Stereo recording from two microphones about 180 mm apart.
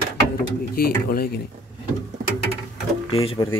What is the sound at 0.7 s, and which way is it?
Speech, 55° left (ahead or behind).